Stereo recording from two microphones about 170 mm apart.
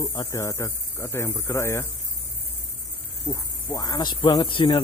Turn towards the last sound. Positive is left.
turn(degrees=30)  # may be behind; listen again after turning